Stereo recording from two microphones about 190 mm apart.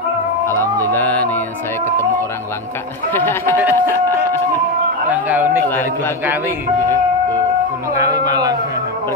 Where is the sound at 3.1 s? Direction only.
10° left (ahead or behind).